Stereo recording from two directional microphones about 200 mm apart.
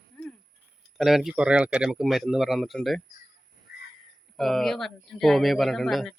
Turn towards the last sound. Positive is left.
turn(degrees=0)  # may be behind; listen again after turning